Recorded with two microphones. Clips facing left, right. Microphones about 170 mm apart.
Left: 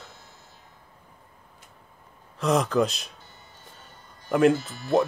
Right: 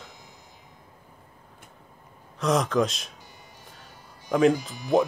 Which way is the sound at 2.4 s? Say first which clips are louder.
Left 1 dB; centre (ahead or behind).